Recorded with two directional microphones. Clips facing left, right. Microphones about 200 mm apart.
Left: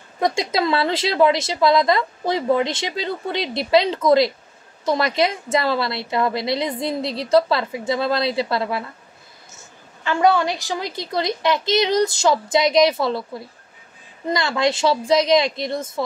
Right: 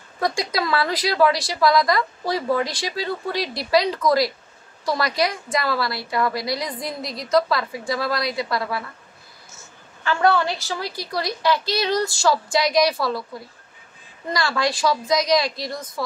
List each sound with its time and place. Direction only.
0.2 s speech: 25° left (ahead or behind)
10.0 s speech: 15° left (ahead or behind)